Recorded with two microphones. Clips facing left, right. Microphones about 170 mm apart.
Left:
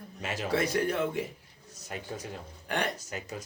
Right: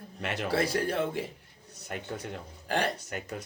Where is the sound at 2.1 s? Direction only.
60° right (ahead or behind).